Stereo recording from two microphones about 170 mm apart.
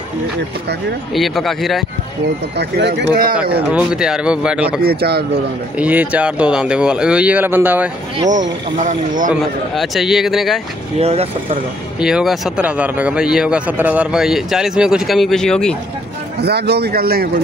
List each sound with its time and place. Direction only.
1.1 s speech: centre (ahead or behind)
2.5 s speech: 85° right
3.7 s speech: 5° right (ahead or behind)
4.8 s speech: 70° right (ahead or behind)
5.8 s speech: 10° right (ahead or behind)
8.3 s speech: 45° right (ahead or behind)
9.3 s speech: centre (ahead or behind)
11.0 s speech: 35° right (ahead or behind)
12.0 s speech: 5° right (ahead or behind)
16.3 s speech: 75° right (ahead or behind)